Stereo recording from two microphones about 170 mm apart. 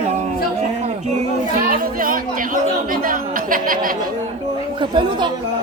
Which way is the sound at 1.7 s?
55° right (ahead or behind).